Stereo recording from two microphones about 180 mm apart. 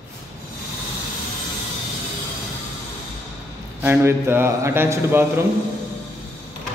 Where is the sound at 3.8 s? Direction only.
15° right (ahead or behind).